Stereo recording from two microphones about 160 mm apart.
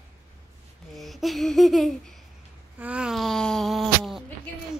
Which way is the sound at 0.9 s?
Centre (ahead or behind).